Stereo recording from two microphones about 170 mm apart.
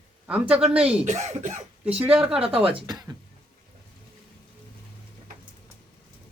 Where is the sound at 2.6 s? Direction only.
30° right (ahead or behind).